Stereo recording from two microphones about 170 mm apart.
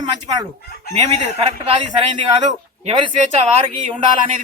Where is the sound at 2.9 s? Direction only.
30° right (ahead or behind).